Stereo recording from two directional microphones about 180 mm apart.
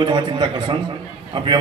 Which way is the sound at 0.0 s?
25° right (ahead or behind).